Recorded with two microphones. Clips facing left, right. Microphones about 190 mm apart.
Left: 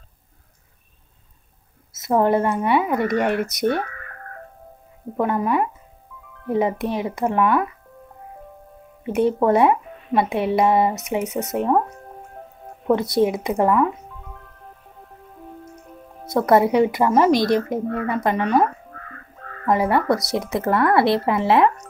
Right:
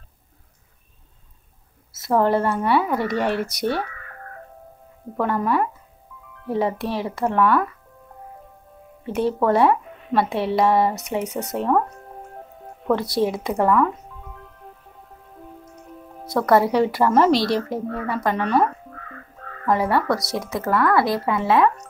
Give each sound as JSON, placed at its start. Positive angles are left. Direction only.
{"t": 2.0, "sound": "speech", "side_deg": 15}
{"t": 5.1, "sound": "speech", "side_deg": 15}
{"t": 9.0, "sound": "speech", "side_deg": 20}
{"t": 12.8, "sound": "speech", "side_deg": 20}
{"t": 16.3, "sound": "speech", "side_deg": 20}
{"t": 17.3, "sound": "speech", "side_deg": 50}
{"t": 17.6, "sound": "speech", "side_deg": 20}